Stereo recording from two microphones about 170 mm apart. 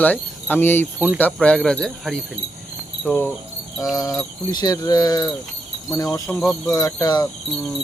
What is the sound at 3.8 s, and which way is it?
Speech, 20° left (ahead or behind).